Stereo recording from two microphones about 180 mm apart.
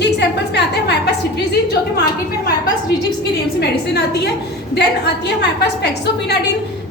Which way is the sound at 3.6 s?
65° left (ahead or behind).